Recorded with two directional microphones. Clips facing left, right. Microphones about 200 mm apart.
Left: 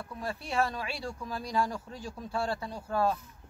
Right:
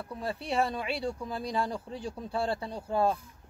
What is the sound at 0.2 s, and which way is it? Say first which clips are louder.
Speech: right 1 dB; 30° right (ahead or behind).